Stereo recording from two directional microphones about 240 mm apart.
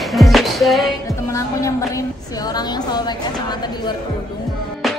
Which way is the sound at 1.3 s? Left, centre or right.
Centre.